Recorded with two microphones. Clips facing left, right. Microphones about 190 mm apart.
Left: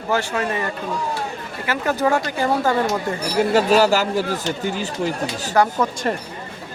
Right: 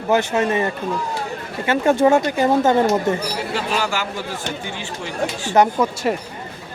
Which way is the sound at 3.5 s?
40° left (ahead or behind).